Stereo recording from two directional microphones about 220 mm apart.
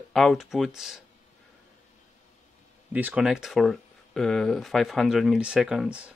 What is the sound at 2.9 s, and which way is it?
Speech, 5° right (ahead or behind).